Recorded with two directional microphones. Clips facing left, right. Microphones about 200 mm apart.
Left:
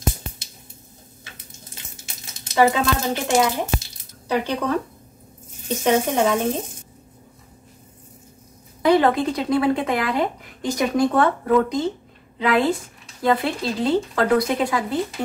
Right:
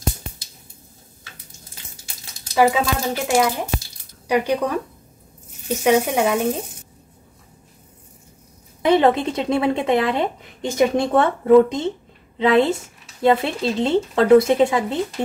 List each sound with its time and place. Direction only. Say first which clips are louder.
2.5 s speech: right 1 dB; 5° right (ahead or behind)
4.3 s speech: right 2 dB; 15° right (ahead or behind)
8.8 s speech: right 1 dB; 25° right (ahead or behind)